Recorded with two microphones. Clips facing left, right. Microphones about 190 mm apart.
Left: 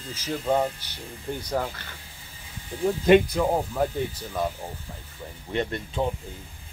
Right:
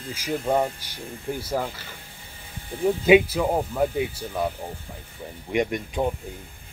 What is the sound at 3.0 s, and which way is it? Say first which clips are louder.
Speech: right 1 dB; 5° right (ahead or behind).